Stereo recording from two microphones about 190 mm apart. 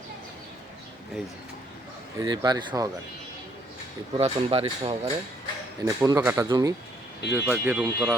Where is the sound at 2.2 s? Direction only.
20° right (ahead or behind).